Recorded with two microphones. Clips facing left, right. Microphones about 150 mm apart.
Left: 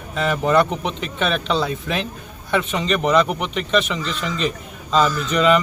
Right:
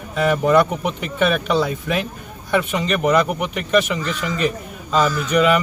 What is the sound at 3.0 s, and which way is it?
A man's voice, 10° right (ahead or behind).